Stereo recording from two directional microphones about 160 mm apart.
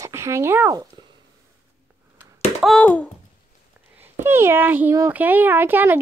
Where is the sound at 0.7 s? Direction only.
25° right (ahead or behind).